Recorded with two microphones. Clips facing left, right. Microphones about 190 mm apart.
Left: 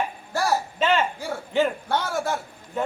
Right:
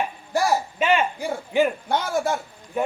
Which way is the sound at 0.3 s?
15° right (ahead or behind).